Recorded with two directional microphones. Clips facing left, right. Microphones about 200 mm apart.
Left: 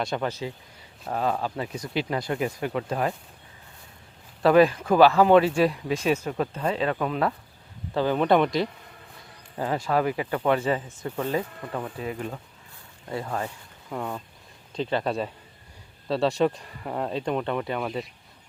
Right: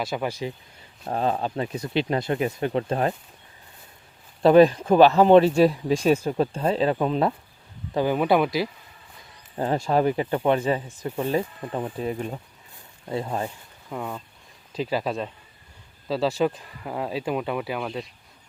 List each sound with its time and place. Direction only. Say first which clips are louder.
0.0 s speech: right 1 dB; 5° right (ahead or behind)
1.0 s speech: right 2 dB; 30° right (ahead or behind)
4.4 s speech: right 3 dB; 25° right (ahead or behind)
5.5 s speech: right 4 dB; centre (ahead or behind)
6.1 s speech: right 4 dB; 30° right (ahead or behind)
7.9 s speech: even; 10° right (ahead or behind)
9.6 s speech: right 3 dB; 25° right (ahead or behind)
13.1 s speech: right 2 dB; 20° right (ahead or behind)
13.9 s speech: even; centre (ahead or behind)